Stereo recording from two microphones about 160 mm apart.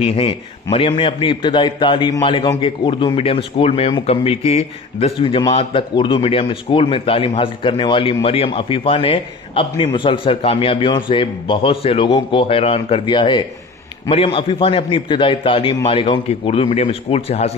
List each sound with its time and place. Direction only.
0.0 s a man's voice: 35° left (ahead or behind)